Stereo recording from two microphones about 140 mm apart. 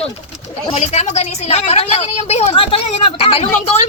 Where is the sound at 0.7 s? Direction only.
50° left (ahead or behind).